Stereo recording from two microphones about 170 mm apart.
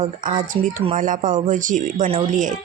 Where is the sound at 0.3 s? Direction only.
50° right (ahead or behind).